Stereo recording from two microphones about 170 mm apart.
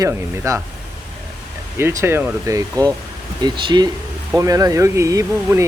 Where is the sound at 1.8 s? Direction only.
15° right (ahead or behind).